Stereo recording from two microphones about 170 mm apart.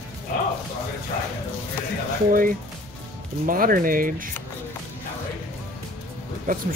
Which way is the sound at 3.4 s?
55° right (ahead or behind).